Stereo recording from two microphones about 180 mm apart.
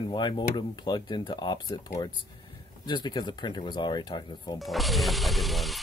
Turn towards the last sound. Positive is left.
turn(degrees=0)  # may be behind; listen again after turning